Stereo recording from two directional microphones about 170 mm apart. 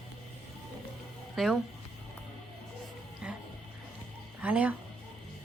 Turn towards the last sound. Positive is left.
turn(degrees=-10)  # may be behind; listen again after turning